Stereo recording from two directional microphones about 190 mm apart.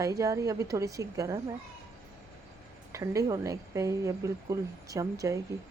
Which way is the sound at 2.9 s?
15° right (ahead or behind).